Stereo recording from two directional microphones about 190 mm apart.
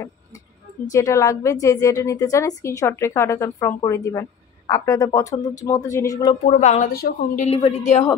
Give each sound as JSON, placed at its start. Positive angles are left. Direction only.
{"t": 0.9, "sound": "a woman's voice", "side_deg": 15}
{"t": 6.4, "sound": "speech", "side_deg": 40}
{"t": 7.4, "sound": "a woman's voice", "side_deg": 30}